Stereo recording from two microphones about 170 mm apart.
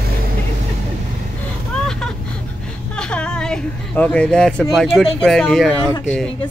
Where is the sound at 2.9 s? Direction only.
5° left (ahead or behind).